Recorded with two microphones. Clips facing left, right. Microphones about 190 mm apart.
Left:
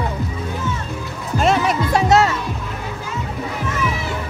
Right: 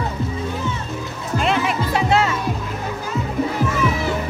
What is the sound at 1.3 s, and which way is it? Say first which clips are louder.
Music: left 3 dB; 40° left (ahead or behind).